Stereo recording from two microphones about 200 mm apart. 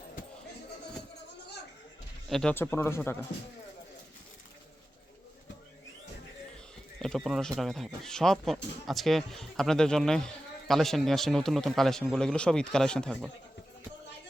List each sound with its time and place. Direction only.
2.3 s speech: 5° left (ahead or behind)
7.0 s speech: centre (ahead or behind)